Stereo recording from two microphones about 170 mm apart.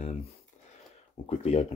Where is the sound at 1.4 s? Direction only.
35° left (ahead or behind).